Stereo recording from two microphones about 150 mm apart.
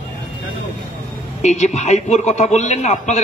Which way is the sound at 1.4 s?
50° left (ahead or behind).